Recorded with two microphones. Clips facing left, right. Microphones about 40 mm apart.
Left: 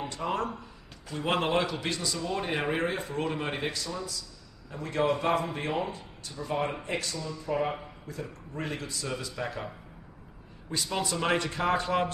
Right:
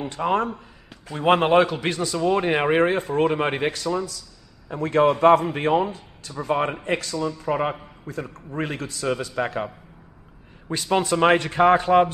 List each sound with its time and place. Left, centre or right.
0.1 s a man's voice: right
4.6 s a man's voice: right
10.7 s a man's voice: right